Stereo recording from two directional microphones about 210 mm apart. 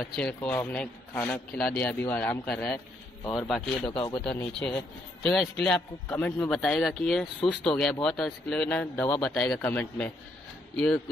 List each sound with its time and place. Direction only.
0.0 s a man's voice: 5° left (ahead or behind)
3.9 s speech: 20° left (ahead or behind)
4.6 s a man's voice: 5° left (ahead or behind)